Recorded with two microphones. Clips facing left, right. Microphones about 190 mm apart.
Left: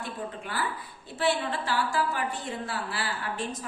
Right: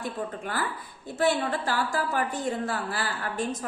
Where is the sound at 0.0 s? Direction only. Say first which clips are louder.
Right 3 dB; 45° right (ahead or behind).